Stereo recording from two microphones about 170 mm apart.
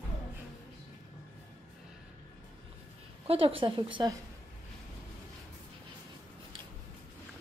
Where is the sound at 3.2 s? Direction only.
35° right (ahead or behind).